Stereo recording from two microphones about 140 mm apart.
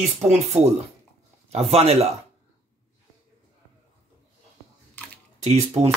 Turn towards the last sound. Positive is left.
turn(degrees=-50)  # may be behind; listen again after turning